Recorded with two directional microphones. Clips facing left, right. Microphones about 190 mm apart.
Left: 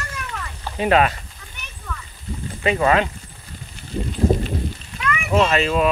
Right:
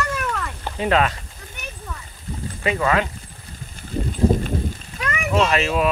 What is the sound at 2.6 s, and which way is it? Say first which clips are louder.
Speech: left 3 dB; 25° left (ahead or behind).